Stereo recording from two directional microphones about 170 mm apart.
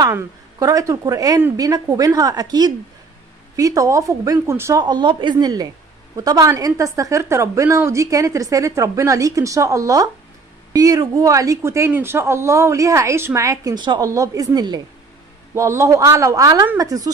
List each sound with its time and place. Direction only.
0.0 s speech: 20° right (ahead or behind)